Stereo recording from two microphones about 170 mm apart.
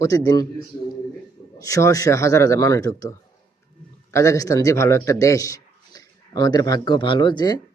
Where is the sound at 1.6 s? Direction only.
20° left (ahead or behind).